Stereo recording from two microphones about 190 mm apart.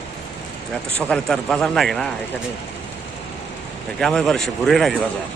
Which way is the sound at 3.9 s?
5° left (ahead or behind).